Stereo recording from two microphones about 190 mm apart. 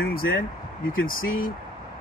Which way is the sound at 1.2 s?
90° left.